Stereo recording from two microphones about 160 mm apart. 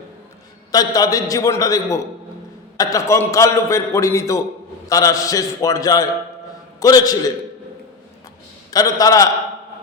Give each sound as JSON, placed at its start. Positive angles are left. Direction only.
{"t": 0.7, "sound": "a man's voice", "side_deg": 25}
{"t": 8.7, "sound": "a man's voice", "side_deg": 20}